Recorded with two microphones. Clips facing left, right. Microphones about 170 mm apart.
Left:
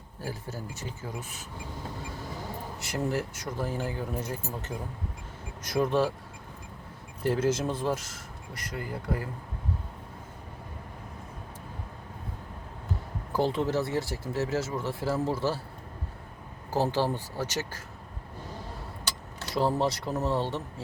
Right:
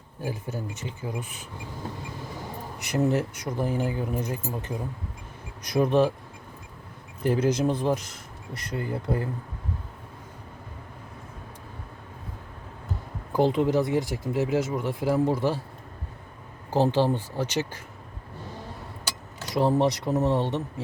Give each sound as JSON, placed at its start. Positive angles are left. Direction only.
{"t": 0.2, "sound": "speech", "side_deg": -20}
{"t": 2.7, "sound": "speech", "side_deg": -20}
{"t": 7.2, "sound": "speech", "side_deg": -20}
{"t": 13.3, "sound": "speech", "side_deg": -20}
{"t": 16.7, "sound": "speech", "side_deg": -20}
{"t": 19.5, "sound": "speech", "side_deg": -20}